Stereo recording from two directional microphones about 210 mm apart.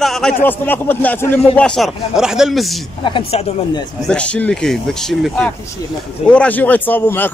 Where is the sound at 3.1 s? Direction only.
25° left (ahead or behind).